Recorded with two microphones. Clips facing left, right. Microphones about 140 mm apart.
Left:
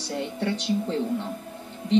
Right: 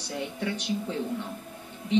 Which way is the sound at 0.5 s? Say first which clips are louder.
Left 6 dB; 5° right (ahead or behind).